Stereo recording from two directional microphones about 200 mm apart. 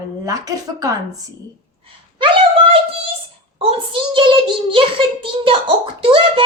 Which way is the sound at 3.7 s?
25° right (ahead or behind).